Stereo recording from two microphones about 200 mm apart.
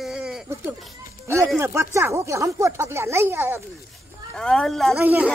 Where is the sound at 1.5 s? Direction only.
10° right (ahead or behind).